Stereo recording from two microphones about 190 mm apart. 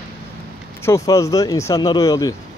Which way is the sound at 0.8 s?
15° left (ahead or behind).